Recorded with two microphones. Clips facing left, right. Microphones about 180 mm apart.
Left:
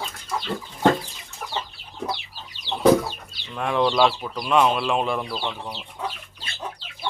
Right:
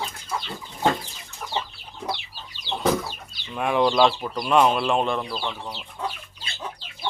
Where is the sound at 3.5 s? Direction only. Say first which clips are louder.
Right 1 dB; 5° right (ahead or behind).